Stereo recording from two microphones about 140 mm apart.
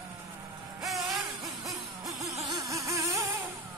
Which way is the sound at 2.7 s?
20° right (ahead or behind).